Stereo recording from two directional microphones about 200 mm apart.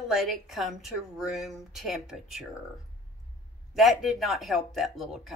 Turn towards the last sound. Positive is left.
turn(degrees=0)  # may be behind; listen again after turning